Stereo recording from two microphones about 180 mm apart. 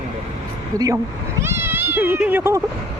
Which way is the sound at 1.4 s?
15° right (ahead or behind).